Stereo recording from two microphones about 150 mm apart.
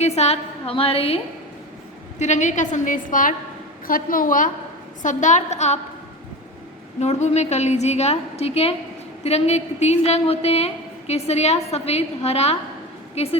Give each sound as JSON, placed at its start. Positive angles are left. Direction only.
{"t": 0.0, "sound": "a woman's voice", "side_deg": 45}
{"t": 2.1, "sound": "a woman's voice", "side_deg": 50}
{"t": 7.0, "sound": "a woman's voice", "side_deg": 50}